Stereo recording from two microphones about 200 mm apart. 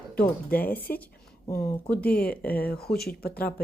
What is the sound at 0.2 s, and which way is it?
Speech, 10° left (ahead or behind).